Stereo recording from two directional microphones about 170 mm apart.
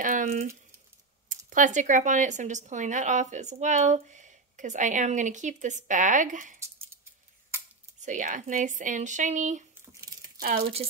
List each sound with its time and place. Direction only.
0.0 s a sound: 50° right (ahead or behind)
1.5 s a woman's voice: 45° right (ahead or behind)
8.0 s a woman's voice: 50° right (ahead or behind)
9.9 s crumpling: 20° right (ahead or behind)